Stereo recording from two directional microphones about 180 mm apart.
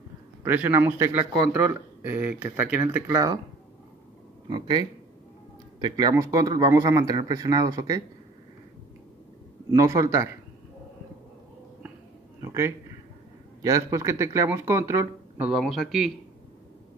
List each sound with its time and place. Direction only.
0.4 s speech: 10° right (ahead or behind)
4.5 s speech: 25° right (ahead or behind)
9.7 s speech: 15° right (ahead or behind)
12.4 s a sound: 15° right (ahead or behind)
13.6 s speech: 15° right (ahead or behind); by 16.1 s centre (ahead or behind)